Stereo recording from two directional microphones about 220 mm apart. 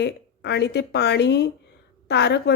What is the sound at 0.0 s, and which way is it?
A woman's voice, 50° left (ahead or behind).